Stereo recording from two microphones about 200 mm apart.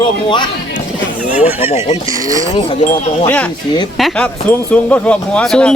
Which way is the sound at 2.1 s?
15° right (ahead or behind).